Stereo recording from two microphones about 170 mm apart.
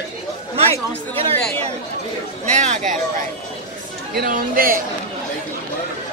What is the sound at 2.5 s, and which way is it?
Speech, 45° right (ahead or behind).